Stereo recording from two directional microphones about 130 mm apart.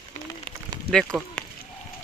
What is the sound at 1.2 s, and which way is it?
Speech, 10° right (ahead or behind).